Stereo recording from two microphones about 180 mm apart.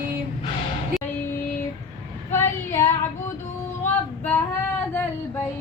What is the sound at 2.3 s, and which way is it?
Child singing, 15° left (ahead or behind).